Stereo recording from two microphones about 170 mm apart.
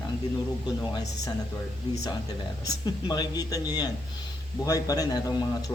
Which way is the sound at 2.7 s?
20° left (ahead or behind).